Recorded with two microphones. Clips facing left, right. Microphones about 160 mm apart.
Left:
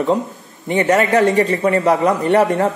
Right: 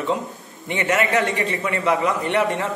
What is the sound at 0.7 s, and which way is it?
Speech, 35° left (ahead or behind).